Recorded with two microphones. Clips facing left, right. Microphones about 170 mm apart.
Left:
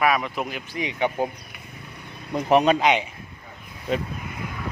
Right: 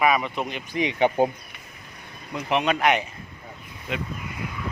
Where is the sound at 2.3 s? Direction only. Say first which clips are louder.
Left 6 dB; 40° left (ahead or behind).